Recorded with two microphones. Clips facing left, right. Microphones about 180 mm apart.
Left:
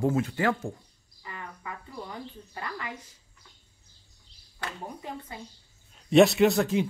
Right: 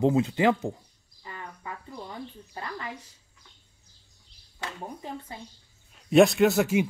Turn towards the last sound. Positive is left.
turn(degrees=-10)  # may be behind; listen again after turning